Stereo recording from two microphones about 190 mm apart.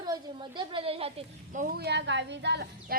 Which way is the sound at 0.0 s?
25° right (ahead or behind).